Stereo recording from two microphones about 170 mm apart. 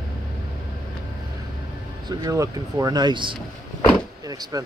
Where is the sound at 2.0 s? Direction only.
20° right (ahead or behind).